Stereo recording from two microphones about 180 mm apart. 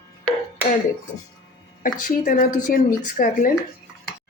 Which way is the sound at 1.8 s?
50° left (ahead or behind).